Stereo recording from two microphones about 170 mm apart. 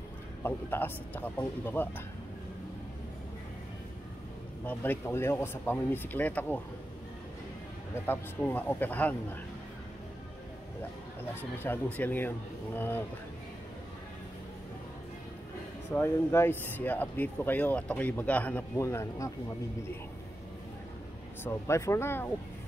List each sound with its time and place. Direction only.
0.4 s speech: 10° left (ahead or behind)
4.6 s speech: 15° left (ahead or behind)
8.1 s speech: 10° left (ahead or behind)
11.6 s speech: 10° left (ahead or behind)
15.9 s speech: 15° left (ahead or behind)
21.5 s speech: 15° left (ahead or behind)